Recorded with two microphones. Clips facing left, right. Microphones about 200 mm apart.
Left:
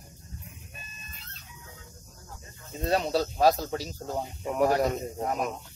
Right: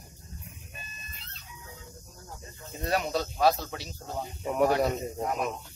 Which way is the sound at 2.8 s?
25° left (ahead or behind).